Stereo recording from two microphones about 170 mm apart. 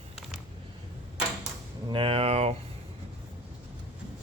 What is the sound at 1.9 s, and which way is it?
Mechanisms, 30° right (ahead or behind).